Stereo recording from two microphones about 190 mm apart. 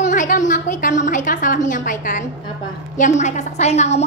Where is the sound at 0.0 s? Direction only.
40° left (ahead or behind).